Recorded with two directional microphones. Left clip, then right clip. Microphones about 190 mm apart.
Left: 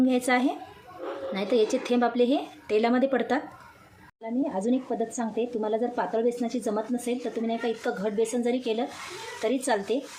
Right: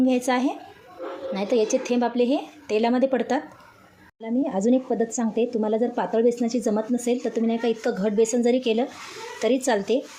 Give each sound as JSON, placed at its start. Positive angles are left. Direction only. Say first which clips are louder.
{"t": 0.0, "sound": "a woman's voice", "louder": "right 2 dB", "side_deg": -10}
{"t": 4.2, "sound": "speech", "louder": "right 4 dB", "side_deg": -25}